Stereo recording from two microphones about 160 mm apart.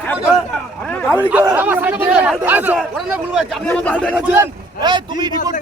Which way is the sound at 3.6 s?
5° left (ahead or behind).